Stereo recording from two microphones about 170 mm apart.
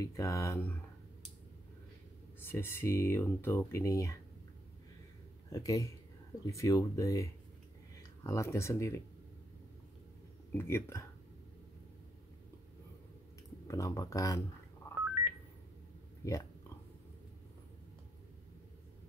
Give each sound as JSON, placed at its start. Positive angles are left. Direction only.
{"t": 0.0, "sound": "speech", "side_deg": 20}
{"t": 2.4, "sound": "speech", "side_deg": 15}
{"t": 5.5, "sound": "speech", "side_deg": 20}
{"t": 10.5, "sound": "speech", "side_deg": 15}
{"t": 13.7, "sound": "speech", "side_deg": 20}
{"t": 14.8, "sound": "telephone dialing", "side_deg": 15}
{"t": 16.3, "sound": "a sound", "side_deg": 20}